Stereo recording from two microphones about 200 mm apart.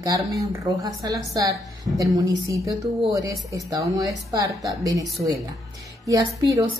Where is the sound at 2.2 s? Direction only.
15° right (ahead or behind).